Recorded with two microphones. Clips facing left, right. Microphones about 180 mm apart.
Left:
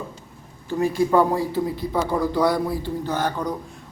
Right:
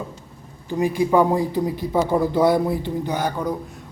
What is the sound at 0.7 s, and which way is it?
A man's voice, 15° right (ahead or behind).